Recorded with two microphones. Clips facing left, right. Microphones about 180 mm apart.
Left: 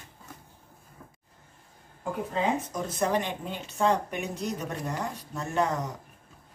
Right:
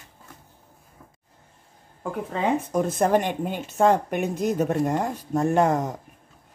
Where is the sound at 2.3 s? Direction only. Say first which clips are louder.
Right 4 dB; 60° right (ahead or behind).